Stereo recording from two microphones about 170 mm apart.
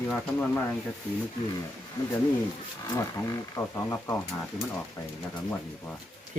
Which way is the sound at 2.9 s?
20° left (ahead or behind).